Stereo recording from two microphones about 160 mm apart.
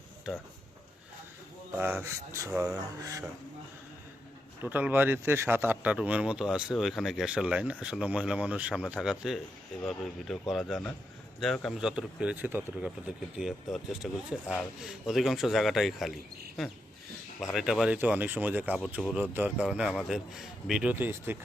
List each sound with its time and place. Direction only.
1.8 s speech: 10° right (ahead or behind)
4.6 s speech: 10° right (ahead or behind)